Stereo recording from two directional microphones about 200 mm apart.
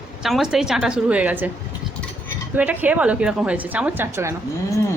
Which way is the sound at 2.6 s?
5° right (ahead or behind).